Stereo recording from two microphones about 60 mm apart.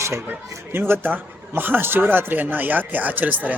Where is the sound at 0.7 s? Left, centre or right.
Right.